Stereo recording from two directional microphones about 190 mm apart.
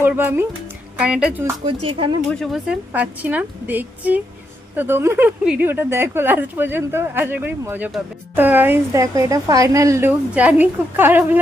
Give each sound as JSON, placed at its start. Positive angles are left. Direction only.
{"t": 0.0, "sound": "speech", "side_deg": -10}
{"t": 1.6, "sound": "speech", "side_deg": -30}
{"t": 2.4, "sound": "speech", "side_deg": -5}